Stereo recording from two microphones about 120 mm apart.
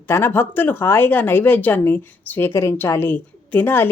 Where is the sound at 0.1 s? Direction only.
20° left (ahead or behind).